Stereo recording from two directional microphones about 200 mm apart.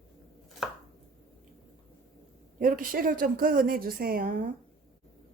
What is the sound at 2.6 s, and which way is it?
A woman's voice, 45° right (ahead or behind).